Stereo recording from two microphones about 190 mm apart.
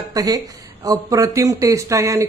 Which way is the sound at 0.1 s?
20° right (ahead or behind).